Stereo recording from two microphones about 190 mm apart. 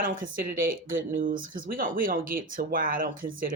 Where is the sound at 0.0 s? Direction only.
45° right (ahead or behind).